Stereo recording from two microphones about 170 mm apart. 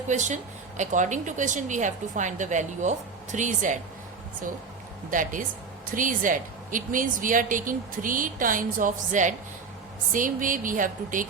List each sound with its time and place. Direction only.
0.1 s a woman's voice: 45° right (ahead or behind)
5.1 s a woman's voice: 50° right (ahead or behind)